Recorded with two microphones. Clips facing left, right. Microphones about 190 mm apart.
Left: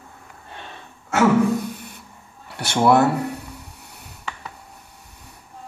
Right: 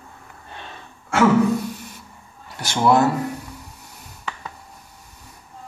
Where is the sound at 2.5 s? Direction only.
60° left (ahead or behind).